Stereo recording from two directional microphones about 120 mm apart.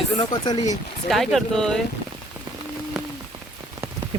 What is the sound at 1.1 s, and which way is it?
Speech, centre (ahead or behind).